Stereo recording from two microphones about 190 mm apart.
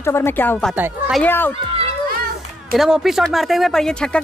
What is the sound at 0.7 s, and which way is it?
Speech, 10° right (ahead or behind).